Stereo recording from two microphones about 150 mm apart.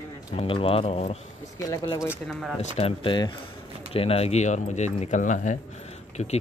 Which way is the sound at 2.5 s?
40° left (ahead or behind).